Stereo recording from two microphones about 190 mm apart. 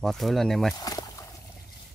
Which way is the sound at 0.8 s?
20° left (ahead or behind).